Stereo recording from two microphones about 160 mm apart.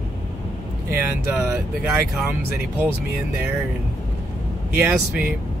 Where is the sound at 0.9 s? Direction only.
10° right (ahead or behind).